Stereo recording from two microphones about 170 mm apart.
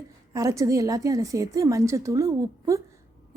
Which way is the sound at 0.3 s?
20° right (ahead or behind).